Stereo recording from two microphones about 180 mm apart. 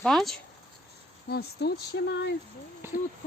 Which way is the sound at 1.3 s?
65° left (ahead or behind).